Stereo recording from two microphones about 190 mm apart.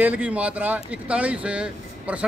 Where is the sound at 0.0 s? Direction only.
10° right (ahead or behind).